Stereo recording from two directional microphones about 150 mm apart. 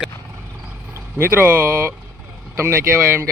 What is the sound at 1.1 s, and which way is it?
Speech, 15° right (ahead or behind).